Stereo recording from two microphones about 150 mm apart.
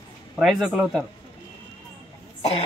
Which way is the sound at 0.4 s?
Centre (ahead or behind).